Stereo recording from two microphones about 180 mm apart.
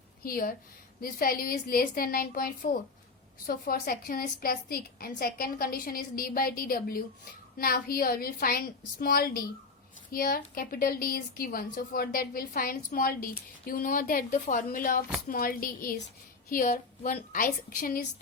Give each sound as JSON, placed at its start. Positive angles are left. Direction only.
{"t": 0.3, "sound": "a woman's voice", "side_deg": 55}